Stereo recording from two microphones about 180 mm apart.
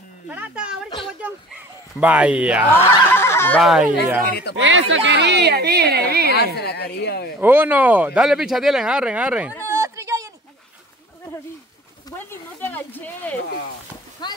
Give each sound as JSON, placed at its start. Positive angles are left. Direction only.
{"t": 0.3, "sound": "speech", "side_deg": -5}
{"t": 0.8, "sound": "a sound", "side_deg": 30}
{"t": 1.2, "sound": "a sound", "side_deg": -10}
{"t": 3.1, "sound": "neigh", "side_deg": 15}
{"t": 3.6, "sound": "speech", "side_deg": -5}
{"t": 4.6, "sound": "a woman's voice", "side_deg": -85}
{"t": 6.3, "sound": "speech", "side_deg": 65}
{"t": 7.3, "sound": "speech", "side_deg": -10}
{"t": 9.7, "sound": "a sound", "side_deg": -15}
{"t": 12.2, "sound": "speech", "side_deg": 10}
{"t": 14.2, "sound": "speech", "side_deg": 25}